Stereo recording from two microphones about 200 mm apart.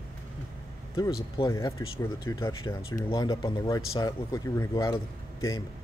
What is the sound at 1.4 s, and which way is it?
Speech, 20° left (ahead or behind).